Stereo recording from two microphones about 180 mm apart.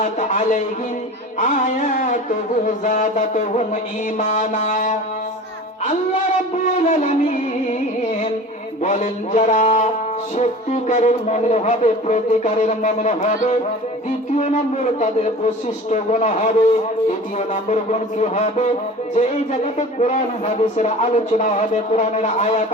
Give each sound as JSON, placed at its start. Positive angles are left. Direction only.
{"t": 0.0, "sound": "a sound", "side_deg": 45}
{"t": 2.6, "sound": "a man's voice", "side_deg": 45}
{"t": 6.9, "sound": "music", "side_deg": 40}
{"t": 8.8, "sound": "a man's voice", "side_deg": 40}